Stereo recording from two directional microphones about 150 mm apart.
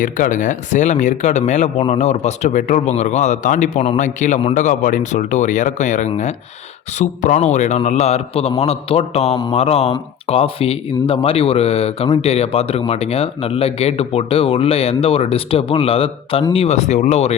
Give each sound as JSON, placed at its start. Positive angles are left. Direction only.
{"t": 0.0, "sound": "speech", "side_deg": 60}